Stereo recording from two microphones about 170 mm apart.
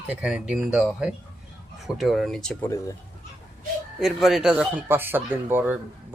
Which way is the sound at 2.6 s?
15° left (ahead or behind).